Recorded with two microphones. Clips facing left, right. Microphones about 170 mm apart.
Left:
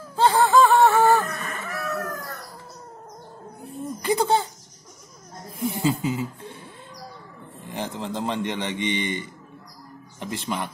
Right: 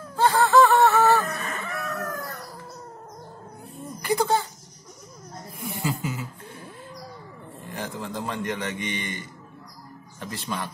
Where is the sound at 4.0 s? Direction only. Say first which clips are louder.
Left 1 dB; 25° left (ahead or behind).